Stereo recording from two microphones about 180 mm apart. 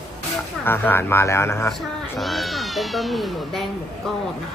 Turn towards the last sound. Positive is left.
turn(degrees=0)  # may be behind; listen again after turning